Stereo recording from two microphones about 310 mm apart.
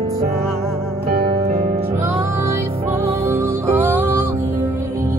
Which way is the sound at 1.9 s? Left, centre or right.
Centre.